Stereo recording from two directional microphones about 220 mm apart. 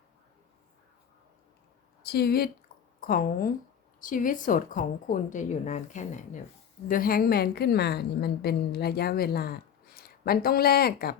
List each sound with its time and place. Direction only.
2.0 s a woman's voice: 45° left (ahead or behind)